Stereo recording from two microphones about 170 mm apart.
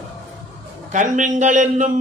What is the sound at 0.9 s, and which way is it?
Speech, 45° right (ahead or behind).